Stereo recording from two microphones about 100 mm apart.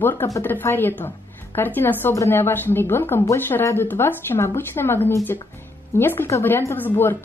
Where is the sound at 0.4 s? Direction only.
20° left (ahead or behind).